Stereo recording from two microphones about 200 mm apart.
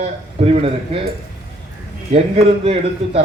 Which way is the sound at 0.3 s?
35° right (ahead or behind).